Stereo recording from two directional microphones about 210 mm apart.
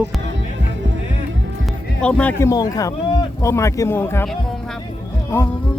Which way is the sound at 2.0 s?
5° left (ahead or behind).